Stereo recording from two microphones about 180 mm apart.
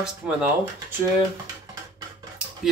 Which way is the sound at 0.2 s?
5° right (ahead or behind).